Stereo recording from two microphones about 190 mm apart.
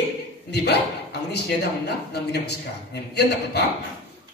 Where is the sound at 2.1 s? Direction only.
60° left (ahead or behind).